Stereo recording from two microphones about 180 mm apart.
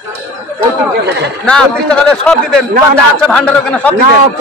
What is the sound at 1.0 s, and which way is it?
Speech, 70° right (ahead or behind).